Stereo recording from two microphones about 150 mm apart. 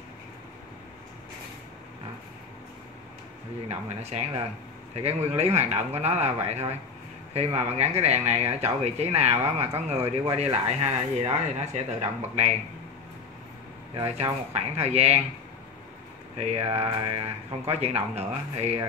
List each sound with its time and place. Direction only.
3.6 s speech: 45° right (ahead or behind)
13.9 s speech: 45° right (ahead or behind)
16.3 s speech: 45° right (ahead or behind)